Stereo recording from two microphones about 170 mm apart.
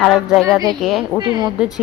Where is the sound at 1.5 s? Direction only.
Centre (ahead or behind).